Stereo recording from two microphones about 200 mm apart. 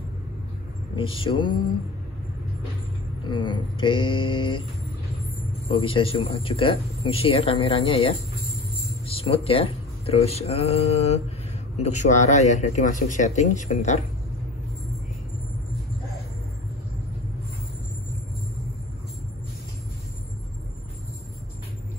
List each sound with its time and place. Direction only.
1.1 s speech: 25° left (ahead or behind)
3.3 s speech: 25° left (ahead or behind)
5.7 s speech: 25° left (ahead or behind)